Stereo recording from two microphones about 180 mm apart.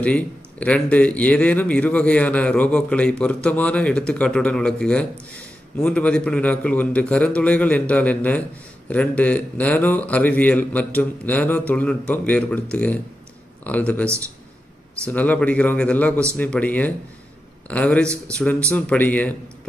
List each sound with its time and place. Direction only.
0.0 s a man's voice: 5° left (ahead or behind)
15.1 s a man's voice: 10° left (ahead or behind)
18.0 s speech: 15° right (ahead or behind)
18.4 s a man's voice: 5° left (ahead or behind)